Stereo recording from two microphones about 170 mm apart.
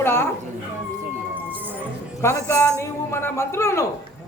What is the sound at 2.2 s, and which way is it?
Speech, 15° left (ahead or behind).